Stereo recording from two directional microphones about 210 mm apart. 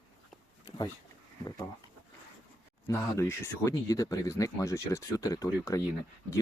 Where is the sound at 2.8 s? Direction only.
10° left (ahead or behind).